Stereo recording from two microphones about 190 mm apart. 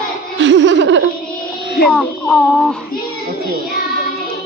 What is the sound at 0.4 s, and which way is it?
Laughter, 70° right (ahead or behind).